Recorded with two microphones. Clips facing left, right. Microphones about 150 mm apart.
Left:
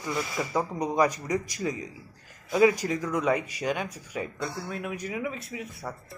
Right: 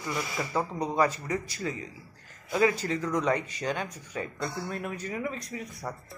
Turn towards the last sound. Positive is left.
turn(degrees=0)  # may be behind; listen again after turning